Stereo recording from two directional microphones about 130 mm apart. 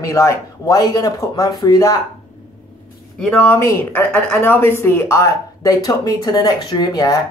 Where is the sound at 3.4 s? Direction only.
20° left (ahead or behind).